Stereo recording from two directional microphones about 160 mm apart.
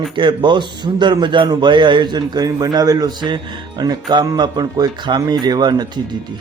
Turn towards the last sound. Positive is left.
turn(degrees=-25)  # may be behind; listen again after turning